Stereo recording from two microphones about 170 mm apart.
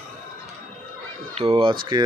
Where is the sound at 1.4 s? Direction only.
30° right (ahead or behind).